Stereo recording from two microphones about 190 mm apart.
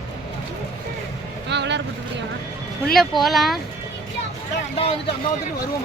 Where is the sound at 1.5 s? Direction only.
65° right (ahead or behind).